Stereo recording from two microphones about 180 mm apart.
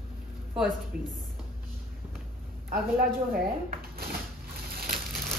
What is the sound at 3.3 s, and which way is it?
Speech, 55° right (ahead or behind).